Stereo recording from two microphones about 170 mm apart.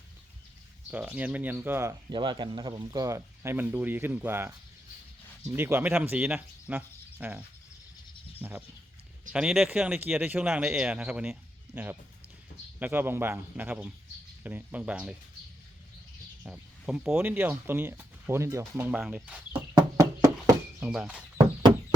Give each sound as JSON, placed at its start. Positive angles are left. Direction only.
{"t": 0.9, "sound": "speech", "side_deg": -10}
{"t": 16.4, "sound": "speech", "side_deg": -5}
{"t": 19.7, "sound": "horse", "side_deg": -20}
{"t": 20.7, "sound": "speech", "side_deg": -5}